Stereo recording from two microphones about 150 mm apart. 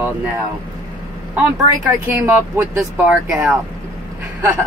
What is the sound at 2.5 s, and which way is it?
Speech, 10° right (ahead or behind).